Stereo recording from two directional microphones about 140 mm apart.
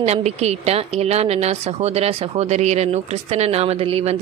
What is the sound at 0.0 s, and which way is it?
Speech, 50° right (ahead or behind).